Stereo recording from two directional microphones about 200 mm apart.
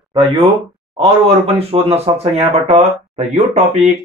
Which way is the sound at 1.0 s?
30° right (ahead or behind).